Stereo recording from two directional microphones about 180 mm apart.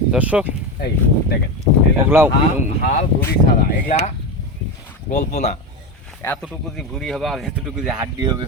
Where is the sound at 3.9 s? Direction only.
40° left (ahead or behind).